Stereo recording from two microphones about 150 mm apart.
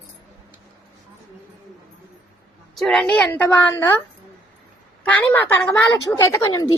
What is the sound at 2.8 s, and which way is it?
Speech, 5° left (ahead or behind).